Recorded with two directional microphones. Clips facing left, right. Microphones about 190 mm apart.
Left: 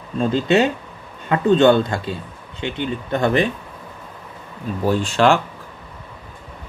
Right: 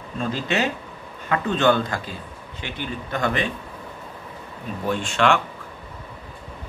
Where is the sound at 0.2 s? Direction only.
30° left (ahead or behind).